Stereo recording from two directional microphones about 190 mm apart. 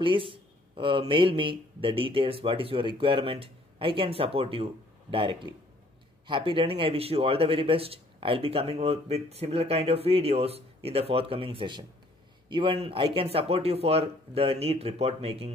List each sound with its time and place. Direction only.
0.0 s speech: 25° right (ahead or behind)